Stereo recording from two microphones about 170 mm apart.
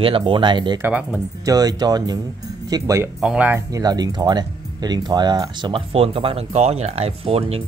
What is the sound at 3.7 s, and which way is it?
Speech, 20° right (ahead or behind).